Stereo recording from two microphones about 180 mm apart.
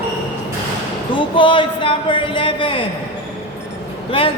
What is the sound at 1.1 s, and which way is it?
Speech, 30° left (ahead or behind).